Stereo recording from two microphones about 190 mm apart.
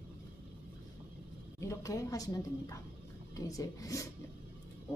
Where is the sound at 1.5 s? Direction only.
15° left (ahead or behind).